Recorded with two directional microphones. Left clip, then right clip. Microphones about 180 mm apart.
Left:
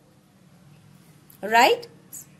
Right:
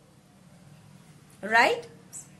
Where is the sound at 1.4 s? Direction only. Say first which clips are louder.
Left 4 dB; 45° left (ahead or behind).